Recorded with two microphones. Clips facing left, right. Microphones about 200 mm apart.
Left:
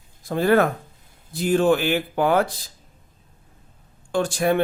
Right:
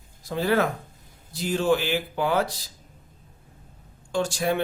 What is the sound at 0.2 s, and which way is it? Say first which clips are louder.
Speech: left 5 dB; 50° left (ahead or behind).